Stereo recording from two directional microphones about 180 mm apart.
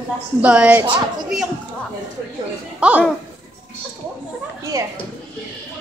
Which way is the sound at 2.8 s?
5° right (ahead or behind).